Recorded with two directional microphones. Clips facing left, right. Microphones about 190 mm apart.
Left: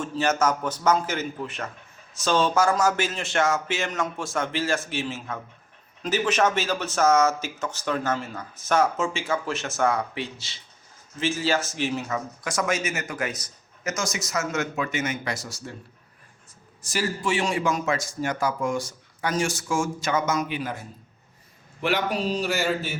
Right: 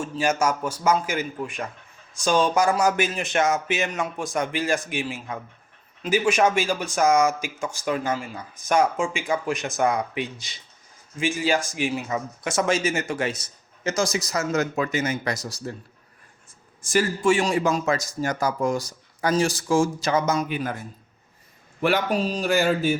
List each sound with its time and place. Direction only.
0.0 s speech: 10° right (ahead or behind); by 15.7 s 35° right (ahead or behind)
16.8 s speech: 50° right (ahead or behind); by 20.4 s 35° right (ahead or behind)
20.5 s a man's voice: 45° right (ahead or behind)
21.8 s a man's voice: 45° right (ahead or behind)